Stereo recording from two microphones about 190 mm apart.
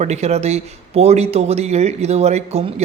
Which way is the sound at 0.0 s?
35° right (ahead or behind).